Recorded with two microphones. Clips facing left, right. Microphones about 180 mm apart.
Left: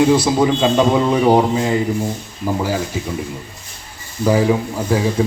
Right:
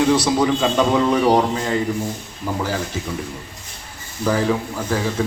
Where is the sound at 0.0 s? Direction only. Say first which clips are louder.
Left 3 dB; 15° left (ahead or behind).